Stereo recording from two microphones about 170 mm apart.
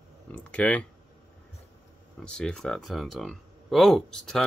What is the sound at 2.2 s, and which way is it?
Speech, 5° left (ahead or behind).